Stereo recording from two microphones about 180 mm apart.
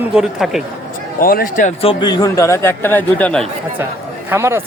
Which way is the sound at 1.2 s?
55° left (ahead or behind).